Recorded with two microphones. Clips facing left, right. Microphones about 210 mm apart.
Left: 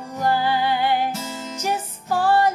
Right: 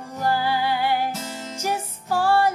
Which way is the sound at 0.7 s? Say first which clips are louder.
Left 2 dB; 20° left (ahead or behind).